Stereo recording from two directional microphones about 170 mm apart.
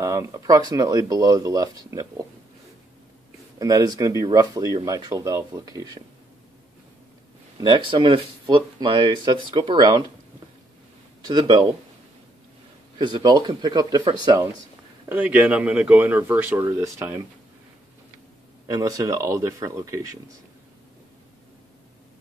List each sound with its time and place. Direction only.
0.0 s speech: 15° right (ahead or behind)
3.5 s speech: 20° right (ahead or behind)
7.5 s speech: 25° right (ahead or behind)
11.2 s speech: 25° right (ahead or behind)
12.9 s speech: 25° right (ahead or behind)
18.7 s speech: 20° right (ahead or behind)